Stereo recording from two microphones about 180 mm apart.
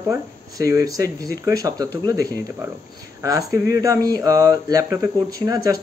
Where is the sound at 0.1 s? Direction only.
15° right (ahead or behind).